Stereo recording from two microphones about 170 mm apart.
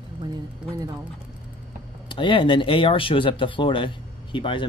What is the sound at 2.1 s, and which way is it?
Speech, 30° left (ahead or behind).